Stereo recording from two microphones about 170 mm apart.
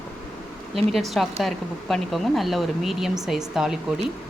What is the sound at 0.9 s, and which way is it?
Speech, centre (ahead or behind).